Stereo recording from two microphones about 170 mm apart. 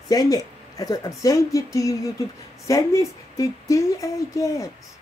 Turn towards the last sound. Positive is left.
turn(degrees=20)  # may be behind; listen again after turning